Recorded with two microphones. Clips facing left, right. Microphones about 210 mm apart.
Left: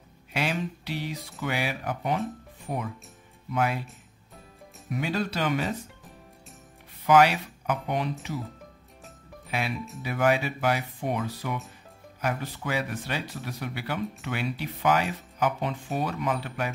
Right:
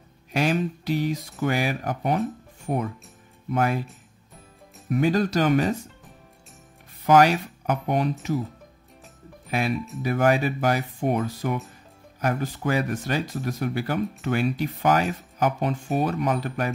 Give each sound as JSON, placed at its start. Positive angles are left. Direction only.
{"t": 0.4, "sound": "speech", "side_deg": -45}
{"t": 4.8, "sound": "speech", "side_deg": -45}
{"t": 7.1, "sound": "speech", "side_deg": -45}
{"t": 10.0, "sound": "speech", "side_deg": -45}